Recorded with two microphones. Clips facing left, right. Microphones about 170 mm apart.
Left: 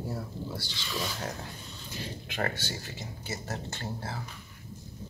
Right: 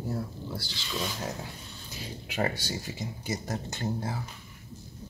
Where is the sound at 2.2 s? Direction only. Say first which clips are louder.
Right 4 dB; 10° right (ahead or behind).